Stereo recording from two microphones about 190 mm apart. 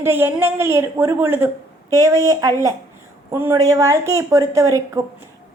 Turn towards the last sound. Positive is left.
turn(degrees=-15)  # may be behind; listen again after turning